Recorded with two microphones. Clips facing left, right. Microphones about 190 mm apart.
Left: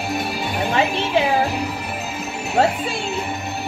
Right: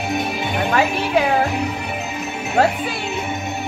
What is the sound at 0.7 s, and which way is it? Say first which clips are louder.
Speech: right 1 dB; 25° left (ahead or behind).